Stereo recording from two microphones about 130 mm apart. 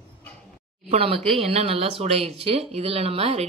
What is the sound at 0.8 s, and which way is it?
Speech, 45° right (ahead or behind).